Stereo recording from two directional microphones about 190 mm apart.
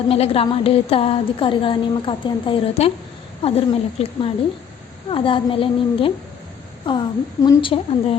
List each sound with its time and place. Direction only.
0.1 s a woman's voice: 30° left (ahead or behind)